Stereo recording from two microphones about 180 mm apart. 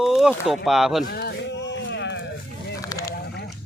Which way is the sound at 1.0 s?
60° left (ahead or behind).